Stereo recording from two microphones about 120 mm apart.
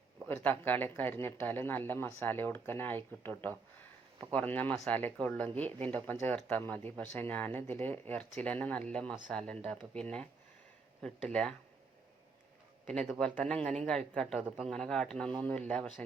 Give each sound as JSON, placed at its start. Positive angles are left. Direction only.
{"t": 0.3, "sound": "speech", "side_deg": 15}
{"t": 4.7, "sound": "a man's voice", "side_deg": 5}
{"t": 12.8, "sound": "a man's voice", "side_deg": 10}